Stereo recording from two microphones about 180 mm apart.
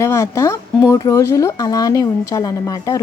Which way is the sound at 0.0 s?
15° left (ahead or behind).